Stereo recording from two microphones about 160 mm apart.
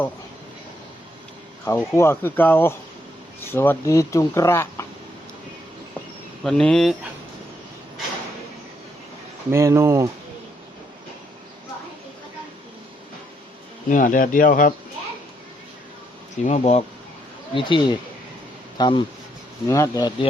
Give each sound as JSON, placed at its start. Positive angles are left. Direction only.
{"t": 1.6, "sound": "speech", "side_deg": 15}
{"t": 6.4, "sound": "speech", "side_deg": 5}
{"t": 9.5, "sound": "speech", "side_deg": -15}
{"t": 13.9, "sound": "speech", "side_deg": 55}
{"t": 16.4, "sound": "speech", "side_deg": 45}
{"t": 17.5, "sound": "speech", "side_deg": 30}
{"t": 19.6, "sound": "speech", "side_deg": 20}